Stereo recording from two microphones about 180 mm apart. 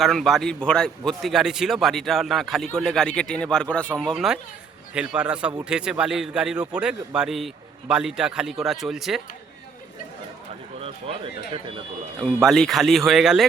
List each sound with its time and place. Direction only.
0.0 s a man's voice: centre (ahead or behind)
10.8 s speech: 30° right (ahead or behind)
12.2 s a man's voice: centre (ahead or behind)